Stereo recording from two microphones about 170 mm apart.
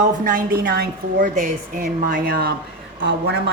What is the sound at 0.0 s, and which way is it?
Speech, 55° right (ahead or behind).